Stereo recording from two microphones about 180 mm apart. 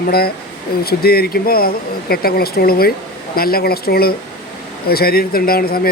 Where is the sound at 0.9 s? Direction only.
60° left (ahead or behind).